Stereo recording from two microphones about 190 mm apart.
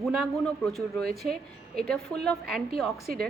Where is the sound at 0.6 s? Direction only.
Centre (ahead or behind).